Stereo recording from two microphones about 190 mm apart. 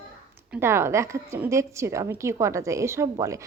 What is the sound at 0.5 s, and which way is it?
A woman's voice, 15° right (ahead or behind).